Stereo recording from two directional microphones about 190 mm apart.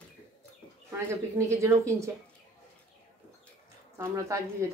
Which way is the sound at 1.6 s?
15° right (ahead or behind).